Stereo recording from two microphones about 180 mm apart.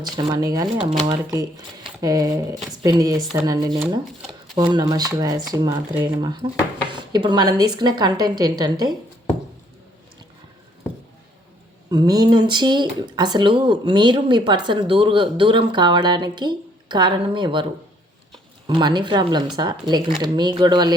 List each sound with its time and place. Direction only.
0.0 s speech: 20° right (ahead or behind)
11.9 s speech: 25° right (ahead or behind)